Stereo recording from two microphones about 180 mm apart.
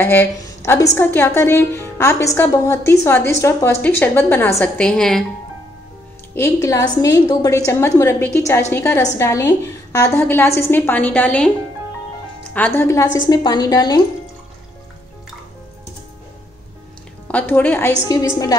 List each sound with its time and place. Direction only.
0.0 s a woman's voice: 15° left (ahead or behind)
6.3 s a woman's voice: 15° left (ahead or behind)
12.5 s a woman's voice: 10° left (ahead or behind)
17.3 s a woman's voice: 10° left (ahead or behind)